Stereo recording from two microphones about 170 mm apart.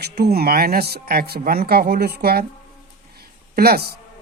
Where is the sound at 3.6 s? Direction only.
65° right (ahead or behind).